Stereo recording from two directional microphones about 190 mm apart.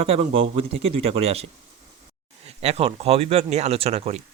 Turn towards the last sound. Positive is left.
turn(degrees=-35)  # may be behind; listen again after turning